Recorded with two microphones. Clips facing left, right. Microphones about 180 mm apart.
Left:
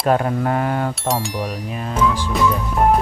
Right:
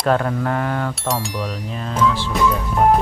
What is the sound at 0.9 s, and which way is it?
Speech, centre (ahead or behind).